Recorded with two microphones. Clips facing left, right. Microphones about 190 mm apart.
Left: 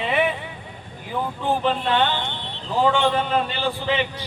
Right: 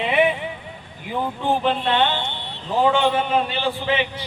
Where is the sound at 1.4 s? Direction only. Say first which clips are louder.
Right 1 dB; 10° right (ahead or behind).